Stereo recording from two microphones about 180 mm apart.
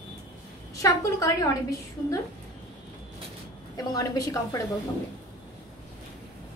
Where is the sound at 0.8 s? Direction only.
20° left (ahead or behind).